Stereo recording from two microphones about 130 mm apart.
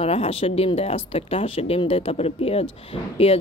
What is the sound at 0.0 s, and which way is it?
Speech, 50° left (ahead or behind).